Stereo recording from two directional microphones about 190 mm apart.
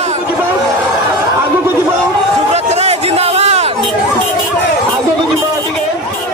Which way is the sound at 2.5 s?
35° right (ahead or behind).